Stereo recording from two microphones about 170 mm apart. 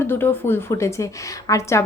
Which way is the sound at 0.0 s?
15° left (ahead or behind).